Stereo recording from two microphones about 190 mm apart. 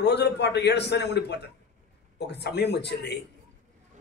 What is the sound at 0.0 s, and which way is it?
A man's voice, 60° left (ahead or behind).